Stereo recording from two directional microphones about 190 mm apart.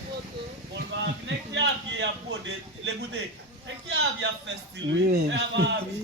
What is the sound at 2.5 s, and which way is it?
A man's voice, 60° right (ahead or behind).